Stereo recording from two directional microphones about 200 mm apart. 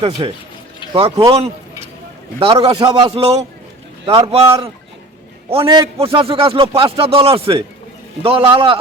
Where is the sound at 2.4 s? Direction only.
20° right (ahead or behind).